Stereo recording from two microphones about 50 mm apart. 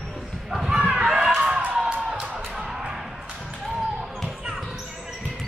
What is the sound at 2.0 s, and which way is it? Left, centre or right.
Music, right.